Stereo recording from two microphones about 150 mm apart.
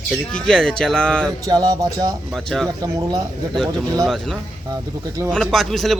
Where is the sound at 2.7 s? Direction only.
25° right (ahead or behind).